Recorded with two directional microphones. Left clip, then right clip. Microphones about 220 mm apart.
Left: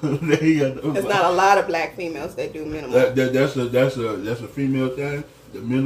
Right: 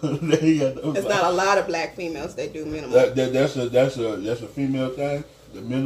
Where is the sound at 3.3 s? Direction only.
50° left (ahead or behind).